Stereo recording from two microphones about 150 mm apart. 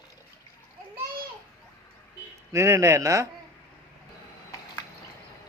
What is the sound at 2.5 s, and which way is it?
Speech, 20° right (ahead or behind).